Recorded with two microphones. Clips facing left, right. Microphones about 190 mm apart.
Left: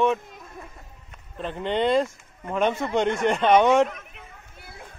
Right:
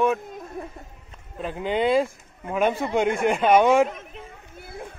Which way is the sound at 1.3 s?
5° right (ahead or behind).